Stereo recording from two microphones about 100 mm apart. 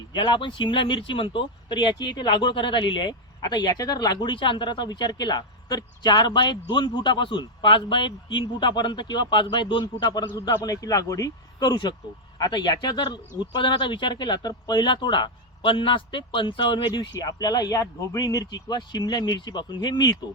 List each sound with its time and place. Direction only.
0.1 s speech: 50° left (ahead or behind)